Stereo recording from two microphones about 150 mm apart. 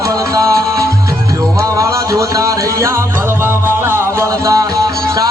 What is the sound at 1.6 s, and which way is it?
Music, 25° right (ahead or behind).